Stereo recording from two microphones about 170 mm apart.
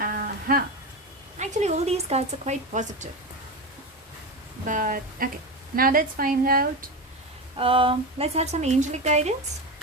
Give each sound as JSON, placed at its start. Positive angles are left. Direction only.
{"t": 0.0, "sound": "music", "side_deg": -60}
{"t": 1.4, "sound": "speech", "side_deg": -40}
{"t": 4.6, "sound": "a woman's voice", "side_deg": -50}
{"t": 7.5, "sound": "speech", "side_deg": -30}